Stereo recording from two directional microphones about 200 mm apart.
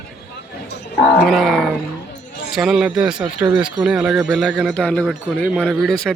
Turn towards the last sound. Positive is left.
turn(degrees=5)  # may be behind; listen again after turning